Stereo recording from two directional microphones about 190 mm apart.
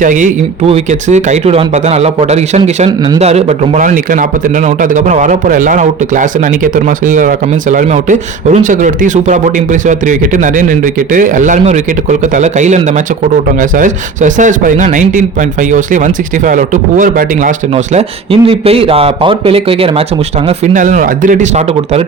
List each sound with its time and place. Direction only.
0.0 s a man's voice: 45° right (ahead or behind)
17.9 s speech: 30° right (ahead or behind)
20.7 s a man's voice: 45° right (ahead or behind)